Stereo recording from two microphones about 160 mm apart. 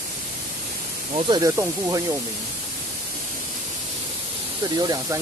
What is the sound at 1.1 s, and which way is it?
Speech, 35° right (ahead or behind).